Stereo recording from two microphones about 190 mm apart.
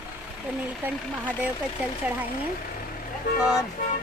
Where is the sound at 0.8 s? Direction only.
10° right (ahead or behind).